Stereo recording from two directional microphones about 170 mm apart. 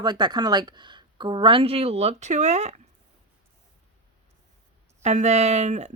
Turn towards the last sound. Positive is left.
turn(degrees=-45)  # may be behind; listen again after turning